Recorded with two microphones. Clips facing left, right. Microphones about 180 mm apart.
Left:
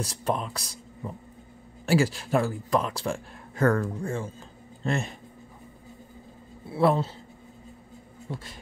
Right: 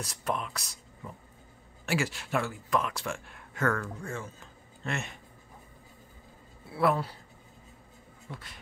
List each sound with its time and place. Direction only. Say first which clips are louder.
0.0 s speech: left 5 dB; 30° left (ahead or behind)
6.7 s speech: left 4 dB; 25° left (ahead or behind)
8.3 s speech: left 7 dB; 35° left (ahead or behind)